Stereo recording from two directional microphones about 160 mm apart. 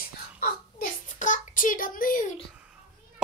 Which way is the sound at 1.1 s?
55° left (ahead or behind).